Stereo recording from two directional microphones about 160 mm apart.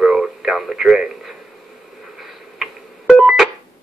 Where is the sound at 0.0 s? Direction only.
5° right (ahead or behind).